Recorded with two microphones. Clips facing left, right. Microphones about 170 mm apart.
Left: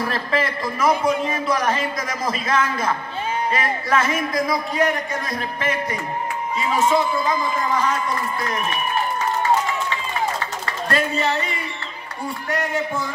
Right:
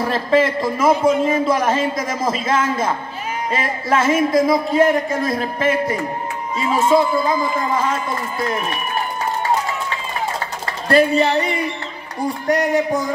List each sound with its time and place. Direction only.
0.0 s a man's voice: 25° right (ahead or behind)
10.9 s speech: 35° right (ahead or behind)